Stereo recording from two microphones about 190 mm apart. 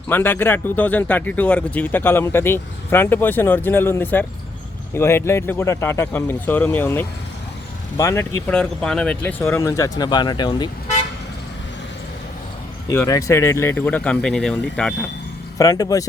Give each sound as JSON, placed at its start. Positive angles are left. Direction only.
{"t": 0.1, "sound": "speech", "side_deg": 10}
{"t": 12.9, "sound": "speech", "side_deg": 15}
{"t": 15.5, "sound": "speech", "side_deg": 20}